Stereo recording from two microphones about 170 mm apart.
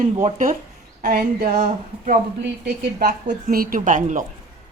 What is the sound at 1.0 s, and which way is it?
A woman's voice, 60° right (ahead or behind).